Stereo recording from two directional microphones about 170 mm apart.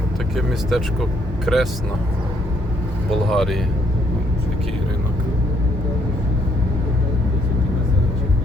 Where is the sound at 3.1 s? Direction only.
Centre (ahead or behind).